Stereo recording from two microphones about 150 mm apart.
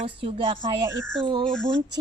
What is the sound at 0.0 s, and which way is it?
Speech, 40° right (ahead or behind).